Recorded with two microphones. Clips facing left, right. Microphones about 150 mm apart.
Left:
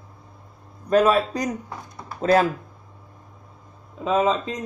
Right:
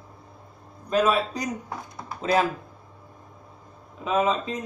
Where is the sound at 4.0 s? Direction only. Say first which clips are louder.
Left 3 dB; 35° left (ahead or behind).